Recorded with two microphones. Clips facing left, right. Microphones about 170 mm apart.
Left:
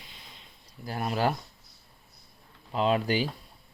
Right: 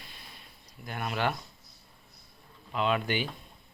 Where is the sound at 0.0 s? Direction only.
20° left (ahead or behind).